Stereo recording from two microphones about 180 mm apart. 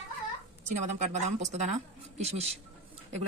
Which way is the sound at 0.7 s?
40° right (ahead or behind).